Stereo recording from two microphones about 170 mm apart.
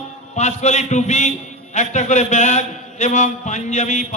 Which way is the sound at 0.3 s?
40° left (ahead or behind).